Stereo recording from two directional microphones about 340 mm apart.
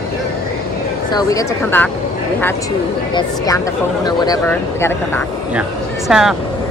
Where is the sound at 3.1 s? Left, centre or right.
Centre.